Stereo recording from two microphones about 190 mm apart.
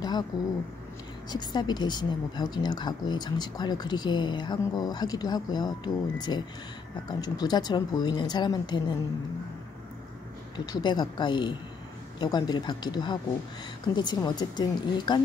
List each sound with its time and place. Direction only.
0.3 s a woman's voice: 20° left (ahead or behind)
10.5 s a woman's voice: 20° left (ahead or behind)